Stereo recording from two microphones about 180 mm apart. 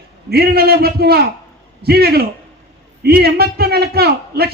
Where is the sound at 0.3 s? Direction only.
60° right (ahead or behind).